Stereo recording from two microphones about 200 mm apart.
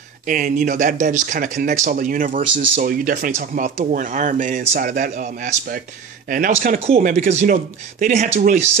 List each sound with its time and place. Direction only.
0.3 s speech: 40° right (ahead or behind)